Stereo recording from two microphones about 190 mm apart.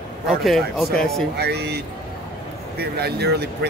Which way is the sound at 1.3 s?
60° right (ahead or behind).